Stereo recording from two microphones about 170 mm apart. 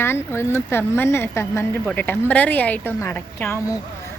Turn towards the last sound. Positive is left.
turn(degrees=10)  # may be behind; listen again after turning